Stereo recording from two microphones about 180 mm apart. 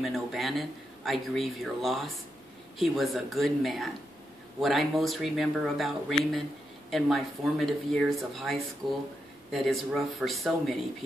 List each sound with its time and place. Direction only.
0.0 s speech: centre (ahead or behind)